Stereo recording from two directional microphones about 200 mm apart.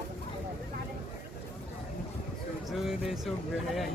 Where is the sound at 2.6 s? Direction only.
Centre (ahead or behind).